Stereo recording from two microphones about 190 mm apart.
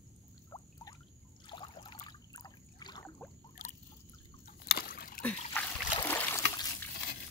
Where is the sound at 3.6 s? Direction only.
40° left (ahead or behind).